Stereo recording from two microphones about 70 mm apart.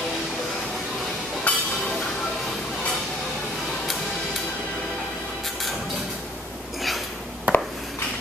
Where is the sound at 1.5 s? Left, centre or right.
Left.